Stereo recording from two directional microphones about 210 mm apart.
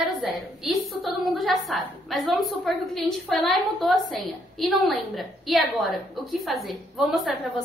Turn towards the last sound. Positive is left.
turn(degrees=0)  # may be behind; listen again after turning